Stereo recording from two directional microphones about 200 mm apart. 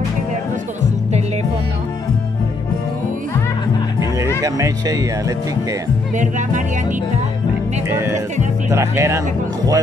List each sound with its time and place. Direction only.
4.4 s speech: 15° right (ahead or behind)
6.1 s speech: 40° right (ahead or behind)
7.9 s speech: 10° right (ahead or behind)